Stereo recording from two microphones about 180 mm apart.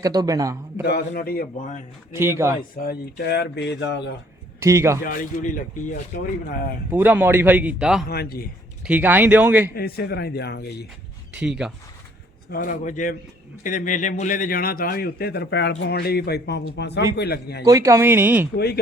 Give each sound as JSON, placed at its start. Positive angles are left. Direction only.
{"t": 0.0, "sound": "a man's voice", "side_deg": -20}
{"t": 1.1, "sound": "speech", "side_deg": 55}
{"t": 2.1, "sound": "a man's voice", "side_deg": -15}
{"t": 2.7, "sound": "speech", "side_deg": 60}
{"t": 4.6, "sound": "a man's voice", "side_deg": -15}
{"t": 5.0, "sound": "speech", "side_deg": 50}
{"t": 6.9, "sound": "a man's voice", "side_deg": -10}
{"t": 8.0, "sound": "a man's voice", "side_deg": 60}
{"t": 8.8, "sound": "a man's voice", "side_deg": -10}
{"t": 9.7, "sound": "a man's voice", "side_deg": 60}
{"t": 11.3, "sound": "speech", "side_deg": -5}
{"t": 12.5, "sound": "a man's voice", "side_deg": 50}
{"t": 17.7, "sound": "a man's voice", "side_deg": -15}
{"t": 18.5, "sound": "a man's voice", "side_deg": 65}